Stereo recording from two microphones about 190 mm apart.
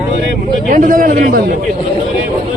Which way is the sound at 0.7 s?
45° right (ahead or behind).